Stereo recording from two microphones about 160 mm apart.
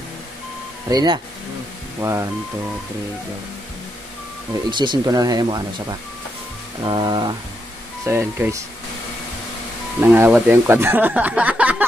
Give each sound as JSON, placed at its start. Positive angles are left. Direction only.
{"t": 0.8, "sound": "speech", "side_deg": -25}
{"t": 4.6, "sound": "speech", "side_deg": -30}
{"t": 8.0, "sound": "speech", "side_deg": -15}
{"t": 9.9, "sound": "speech", "side_deg": -15}